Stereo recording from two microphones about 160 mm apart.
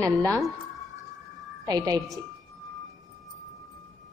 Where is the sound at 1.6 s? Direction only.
25° right (ahead or behind).